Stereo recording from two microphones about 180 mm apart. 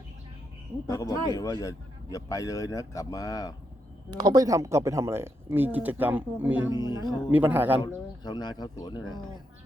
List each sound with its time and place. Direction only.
0.9 s speech: 20° left (ahead or behind)
4.1 s speech: 20° right (ahead or behind)
7.8 s speech: 25° left (ahead or behind)